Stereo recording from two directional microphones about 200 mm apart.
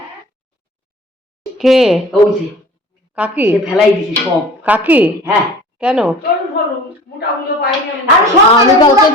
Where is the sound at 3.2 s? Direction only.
10° right (ahead or behind).